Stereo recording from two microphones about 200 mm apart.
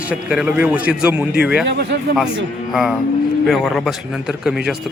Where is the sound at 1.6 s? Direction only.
55° right (ahead or behind).